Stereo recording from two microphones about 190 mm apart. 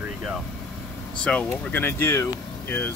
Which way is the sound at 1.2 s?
5° left (ahead or behind).